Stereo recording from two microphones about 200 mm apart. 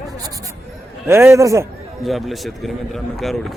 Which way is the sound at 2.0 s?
Centre (ahead or behind).